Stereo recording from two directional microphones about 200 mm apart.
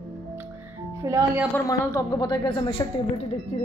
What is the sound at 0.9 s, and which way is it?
Speech, 15° right (ahead or behind).